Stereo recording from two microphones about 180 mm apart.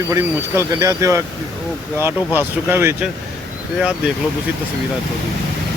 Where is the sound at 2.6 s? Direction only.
10° right (ahead or behind).